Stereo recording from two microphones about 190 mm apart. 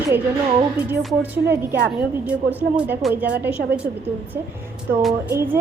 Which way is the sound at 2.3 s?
10° right (ahead or behind).